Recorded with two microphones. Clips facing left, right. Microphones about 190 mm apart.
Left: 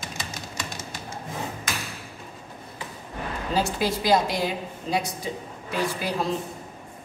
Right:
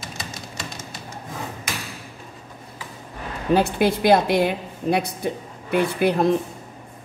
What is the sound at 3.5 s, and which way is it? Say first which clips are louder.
A woman's voice: right 5 dB; 60° right (ahead or behind).